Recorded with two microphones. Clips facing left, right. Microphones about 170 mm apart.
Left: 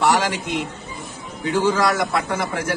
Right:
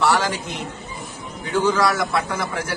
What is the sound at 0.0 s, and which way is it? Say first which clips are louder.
Speech: left 1 dB; 20° left (ahead or behind).